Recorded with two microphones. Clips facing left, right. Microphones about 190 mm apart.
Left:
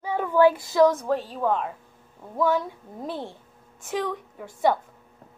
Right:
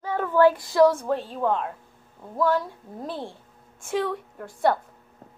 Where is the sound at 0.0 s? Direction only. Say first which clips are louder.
Even; 10° left (ahead or behind).